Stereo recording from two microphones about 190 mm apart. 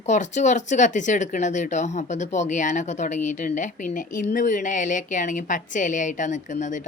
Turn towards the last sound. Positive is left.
turn(degrees=40)  # may be behind; listen again after turning